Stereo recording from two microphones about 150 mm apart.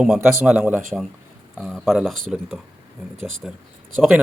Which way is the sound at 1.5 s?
Centre (ahead or behind).